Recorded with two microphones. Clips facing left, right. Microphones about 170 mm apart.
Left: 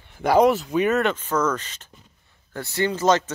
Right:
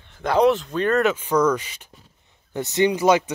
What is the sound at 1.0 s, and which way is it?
Speech, 10° right (ahead or behind).